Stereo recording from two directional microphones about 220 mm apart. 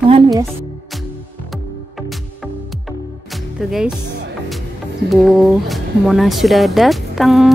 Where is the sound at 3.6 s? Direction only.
5° right (ahead or behind).